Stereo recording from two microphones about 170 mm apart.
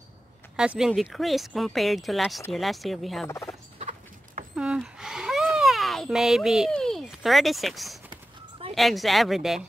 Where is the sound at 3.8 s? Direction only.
45° right (ahead or behind).